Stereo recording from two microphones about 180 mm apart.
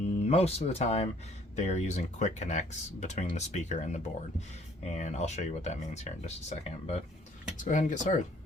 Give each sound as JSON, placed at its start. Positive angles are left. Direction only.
{"t": 0.3, "sound": "speech", "side_deg": 35}